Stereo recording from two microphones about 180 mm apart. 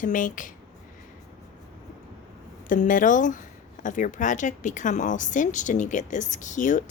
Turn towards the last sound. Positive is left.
turn(degrees=45)  # may be behind; listen again after turning